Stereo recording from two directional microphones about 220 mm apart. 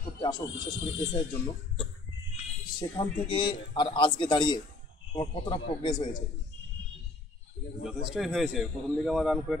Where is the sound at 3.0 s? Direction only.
20° left (ahead or behind).